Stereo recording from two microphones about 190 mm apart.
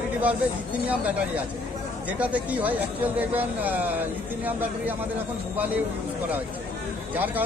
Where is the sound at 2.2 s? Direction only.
5° right (ahead or behind).